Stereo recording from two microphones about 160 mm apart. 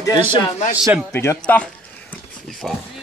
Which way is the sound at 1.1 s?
15° left (ahead or behind).